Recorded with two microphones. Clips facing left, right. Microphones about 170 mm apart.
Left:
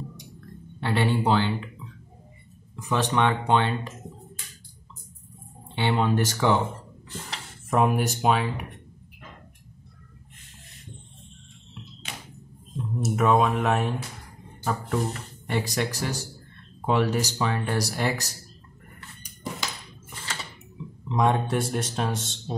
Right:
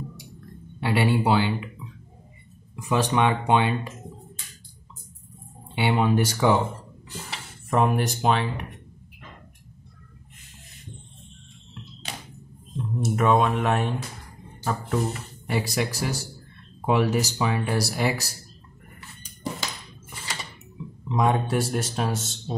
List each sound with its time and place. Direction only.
0.7 s speech: 10° right (ahead or behind)
2.7 s speech: 10° right (ahead or behind)
5.8 s speech: 10° right (ahead or behind)
7.7 s speech: 5° left (ahead or behind)
12.1 s a sound: 35° right (ahead or behind)
12.7 s speech: centre (ahead or behind)
21.1 s speech: 5° right (ahead or behind)